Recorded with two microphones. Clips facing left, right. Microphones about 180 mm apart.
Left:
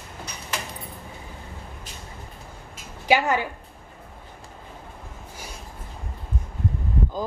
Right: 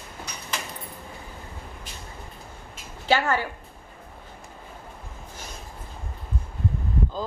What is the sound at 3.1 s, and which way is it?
Speech, 15° left (ahead or behind).